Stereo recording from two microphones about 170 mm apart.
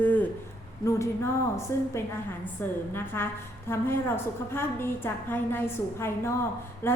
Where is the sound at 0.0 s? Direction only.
10° left (ahead or behind).